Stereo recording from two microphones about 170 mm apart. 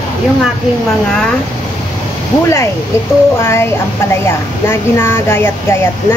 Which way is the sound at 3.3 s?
15° left (ahead or behind).